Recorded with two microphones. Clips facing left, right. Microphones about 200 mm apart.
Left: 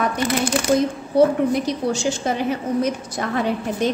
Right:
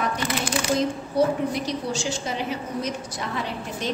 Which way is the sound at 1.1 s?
55° left (ahead or behind).